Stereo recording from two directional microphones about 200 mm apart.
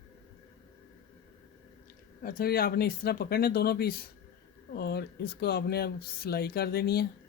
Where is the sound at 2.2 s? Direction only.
50° left (ahead or behind).